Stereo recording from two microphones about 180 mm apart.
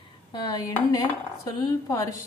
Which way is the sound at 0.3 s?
25° left (ahead or behind).